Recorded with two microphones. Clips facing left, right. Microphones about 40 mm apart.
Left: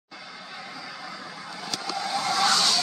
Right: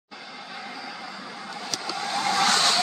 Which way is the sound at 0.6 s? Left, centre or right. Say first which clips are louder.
Right 3 dB; right.